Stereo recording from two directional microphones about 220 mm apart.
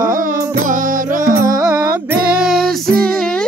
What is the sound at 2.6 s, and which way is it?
Child singing, 40° right (ahead or behind).